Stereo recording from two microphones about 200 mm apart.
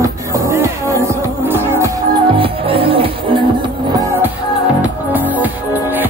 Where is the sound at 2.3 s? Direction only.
25° right (ahead or behind).